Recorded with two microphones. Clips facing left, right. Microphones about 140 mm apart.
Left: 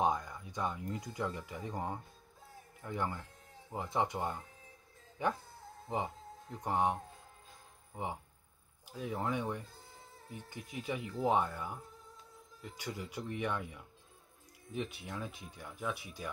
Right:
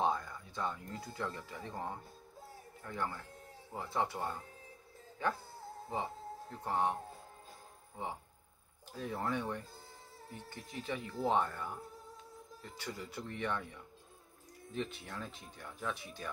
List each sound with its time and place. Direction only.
0.0 s speech: 15° left (ahead or behind)